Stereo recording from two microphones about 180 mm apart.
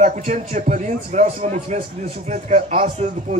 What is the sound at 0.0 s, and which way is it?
A man's voice, 45° right (ahead or behind).